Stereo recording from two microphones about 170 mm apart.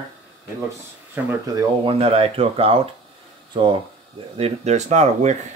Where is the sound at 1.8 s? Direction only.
35° right (ahead or behind).